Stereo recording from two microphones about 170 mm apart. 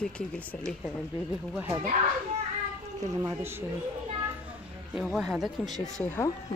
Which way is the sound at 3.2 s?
15° right (ahead or behind).